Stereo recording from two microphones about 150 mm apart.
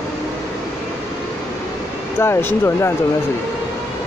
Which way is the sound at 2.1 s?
15° left (ahead or behind).